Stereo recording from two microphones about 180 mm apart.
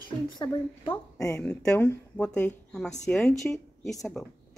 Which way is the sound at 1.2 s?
10° left (ahead or behind).